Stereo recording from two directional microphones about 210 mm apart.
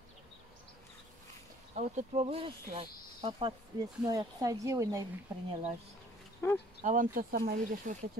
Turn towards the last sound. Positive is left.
turn(degrees=-40)  # may be behind; listen again after turning